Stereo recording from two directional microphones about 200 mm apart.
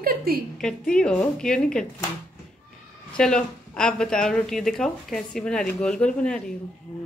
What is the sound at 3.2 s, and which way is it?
Speech, 5° left (ahead or behind).